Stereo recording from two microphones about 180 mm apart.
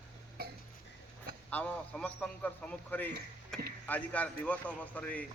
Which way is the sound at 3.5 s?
5° left (ahead or behind).